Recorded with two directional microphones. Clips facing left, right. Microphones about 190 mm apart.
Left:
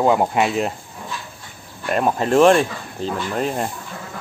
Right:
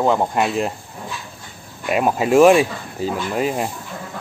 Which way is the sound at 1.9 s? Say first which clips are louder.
Right 1 dB; 5° right (ahead or behind).